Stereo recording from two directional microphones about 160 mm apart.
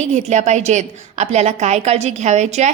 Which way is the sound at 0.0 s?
45° right (ahead or behind).